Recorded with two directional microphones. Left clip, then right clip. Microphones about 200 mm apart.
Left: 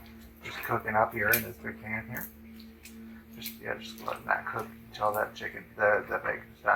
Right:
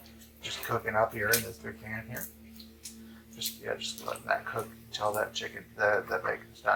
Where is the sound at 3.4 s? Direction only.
20° right (ahead or behind).